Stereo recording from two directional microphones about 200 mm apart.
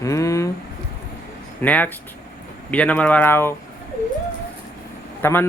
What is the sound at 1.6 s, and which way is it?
A child's voice, 10° left (ahead or behind).